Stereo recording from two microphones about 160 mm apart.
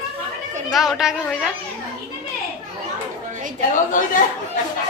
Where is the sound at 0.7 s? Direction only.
Centre (ahead or behind).